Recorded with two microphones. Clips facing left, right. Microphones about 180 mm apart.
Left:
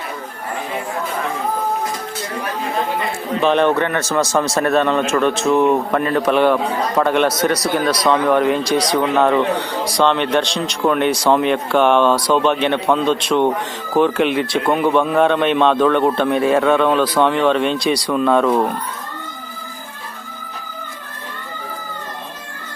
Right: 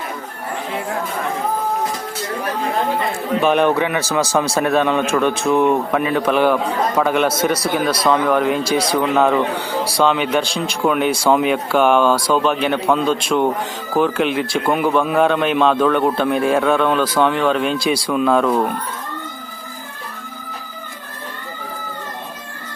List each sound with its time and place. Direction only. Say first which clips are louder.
3.4 s a man's voice: left 1 dB; 10° right (ahead or behind)